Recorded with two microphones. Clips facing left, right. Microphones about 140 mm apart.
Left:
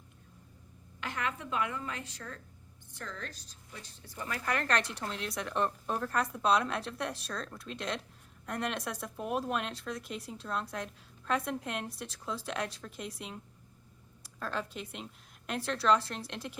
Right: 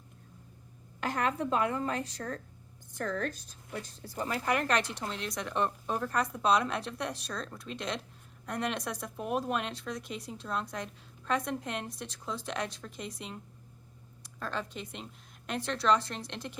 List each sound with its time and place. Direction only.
1.0 s a woman's voice: 40° right (ahead or behind)
4.0 s a woman's voice: 30° right (ahead or behind)
4.4 s speech: 10° right (ahead or behind); by 16.6 s 5° left (ahead or behind)